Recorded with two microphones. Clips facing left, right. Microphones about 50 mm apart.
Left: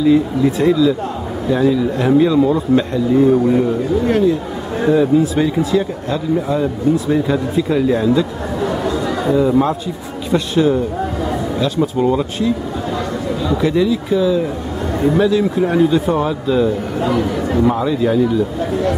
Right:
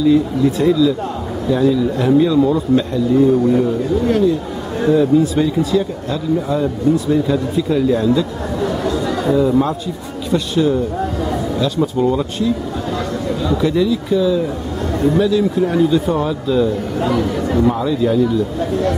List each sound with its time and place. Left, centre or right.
0.0 s a man's voice: centre